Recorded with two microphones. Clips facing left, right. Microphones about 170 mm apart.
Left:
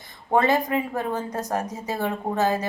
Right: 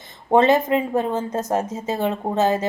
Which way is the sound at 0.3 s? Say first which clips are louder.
Right 5 dB; 20° right (ahead or behind).